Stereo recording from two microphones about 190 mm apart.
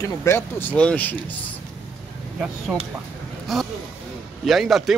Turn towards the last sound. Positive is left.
turn(degrees=0)  # may be behind; listen again after turning